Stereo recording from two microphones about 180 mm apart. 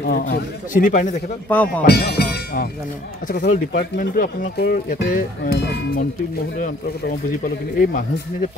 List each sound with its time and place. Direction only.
0.1 s speech: 50° left (ahead or behind)
1.8 s speech: 60° left (ahead or behind)
3.3 s speech: 50° left (ahead or behind)
6.6 s speech: 50° left (ahead or behind)